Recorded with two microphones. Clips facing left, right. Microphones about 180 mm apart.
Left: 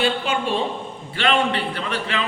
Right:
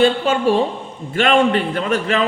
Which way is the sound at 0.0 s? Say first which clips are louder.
Right 7 dB; 40° right (ahead or behind).